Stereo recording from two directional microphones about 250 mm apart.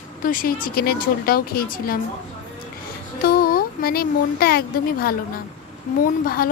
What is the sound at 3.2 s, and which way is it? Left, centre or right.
A woman's voice, left.